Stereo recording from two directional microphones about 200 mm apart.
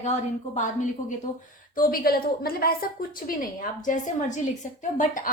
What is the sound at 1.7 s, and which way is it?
A woman's voice, 45° left (ahead or behind).